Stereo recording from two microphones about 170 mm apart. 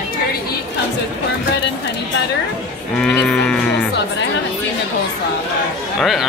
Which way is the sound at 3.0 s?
5° left (ahead or behind).